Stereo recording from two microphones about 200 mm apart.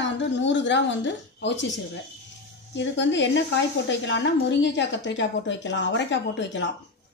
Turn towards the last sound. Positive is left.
turn(degrees=65)  # may be behind; listen again after turning